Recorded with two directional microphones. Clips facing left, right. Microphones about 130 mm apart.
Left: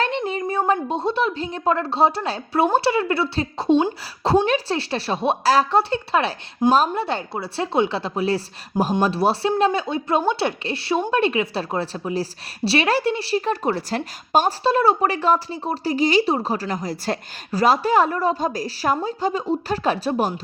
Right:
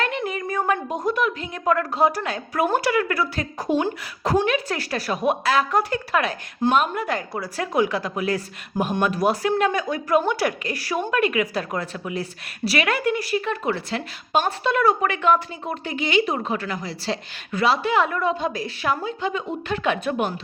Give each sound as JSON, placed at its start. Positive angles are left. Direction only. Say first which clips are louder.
{"t": 0.0, "sound": "a woman's voice", "louder": "left 3 dB", "side_deg": 30}